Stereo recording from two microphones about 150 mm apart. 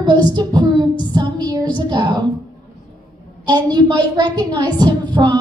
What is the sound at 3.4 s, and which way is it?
A woman's voice, 30° right (ahead or behind).